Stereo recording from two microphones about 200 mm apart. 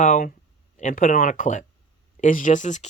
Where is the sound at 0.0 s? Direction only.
40° left (ahead or behind).